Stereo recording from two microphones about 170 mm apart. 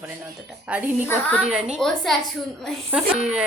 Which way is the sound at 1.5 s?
Centre (ahead or behind).